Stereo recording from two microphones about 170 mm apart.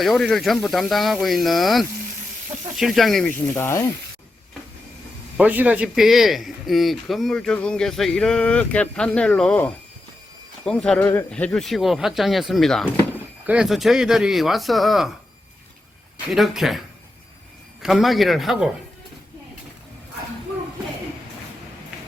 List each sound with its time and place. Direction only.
0.0 s a man's voice: centre (ahead or behind)
3.3 s speech: 15° left (ahead or behind)
5.4 s a man's voice: 10° right (ahead or behind)
11.0 s a man's voice: 15° left (ahead or behind); by 15.1 s centre (ahead or behind)
16.3 s a man's voice: centre (ahead or behind)
17.8 s a man's voice: centre (ahead or behind)